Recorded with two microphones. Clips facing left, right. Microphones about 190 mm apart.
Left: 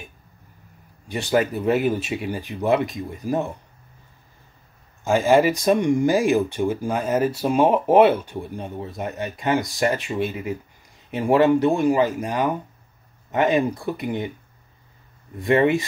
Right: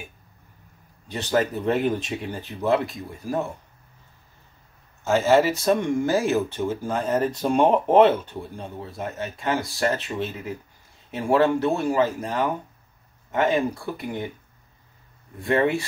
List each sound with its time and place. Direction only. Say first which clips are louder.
1.0 s speech: left 2 dB; 10° left (ahead or behind)
5.0 s speech: left 2 dB; 15° left (ahead or behind)
15.3 s speech: left 3 dB; 15° left (ahead or behind)